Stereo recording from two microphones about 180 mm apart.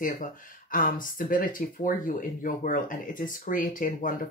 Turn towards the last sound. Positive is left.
turn(degrees=50)  # may be behind; listen again after turning